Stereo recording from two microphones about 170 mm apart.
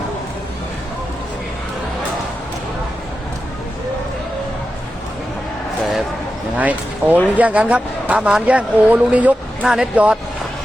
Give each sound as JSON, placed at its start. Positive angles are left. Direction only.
{"t": 6.6, "sound": "speech", "side_deg": -10}